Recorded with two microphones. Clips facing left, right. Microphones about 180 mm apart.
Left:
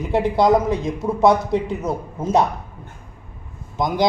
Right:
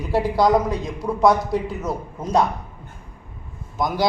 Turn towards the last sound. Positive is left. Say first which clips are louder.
# left 1 dB
turn(degrees=20)  # may be behind; listen again after turning